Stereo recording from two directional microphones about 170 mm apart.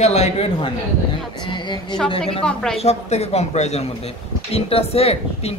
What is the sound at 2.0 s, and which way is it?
Mantra, 35° left (ahead or behind).